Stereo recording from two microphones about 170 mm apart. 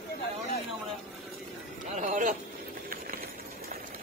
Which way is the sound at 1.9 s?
50° right (ahead or behind).